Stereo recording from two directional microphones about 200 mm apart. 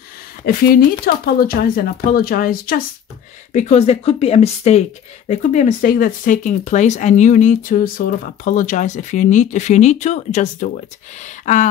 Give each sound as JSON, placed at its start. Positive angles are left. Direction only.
{"t": 0.5, "sound": "speech", "side_deg": 45}
{"t": 3.5, "sound": "speech", "side_deg": 35}